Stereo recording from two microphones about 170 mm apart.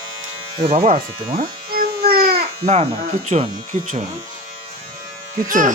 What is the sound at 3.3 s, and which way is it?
Speech, 40° right (ahead or behind).